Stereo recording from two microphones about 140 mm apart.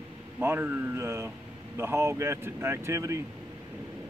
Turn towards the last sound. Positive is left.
turn(degrees=-20)  # may be behind; listen again after turning